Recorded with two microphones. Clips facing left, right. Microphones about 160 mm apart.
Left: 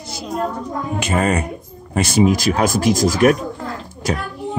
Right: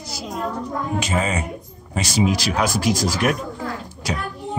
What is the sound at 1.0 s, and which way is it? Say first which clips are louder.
Speech: left 6 dB; 60° left (ahead or behind).